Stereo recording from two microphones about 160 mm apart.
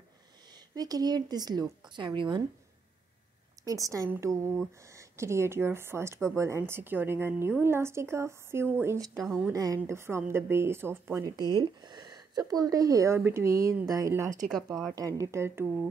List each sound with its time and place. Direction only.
0.7 s speech: 25° right (ahead or behind)
3.6 s speech: 20° right (ahead or behind)
9.1 s speech: centre (ahead or behind)
9.5 s speech: 25° right (ahead or behind)